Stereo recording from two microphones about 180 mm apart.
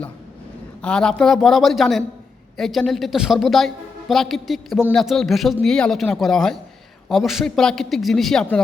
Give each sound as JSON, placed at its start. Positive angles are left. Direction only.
{"t": 0.8, "sound": "speech", "side_deg": 5}